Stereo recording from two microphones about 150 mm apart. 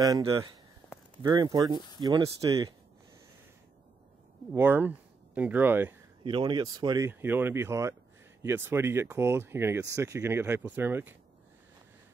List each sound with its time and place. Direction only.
1.2 s speech: 25° right (ahead or behind)
4.5 s speech: 15° right (ahead or behind)
6.2 s speech: 30° right (ahead or behind)
7.1 s speech: 15° right (ahead or behind)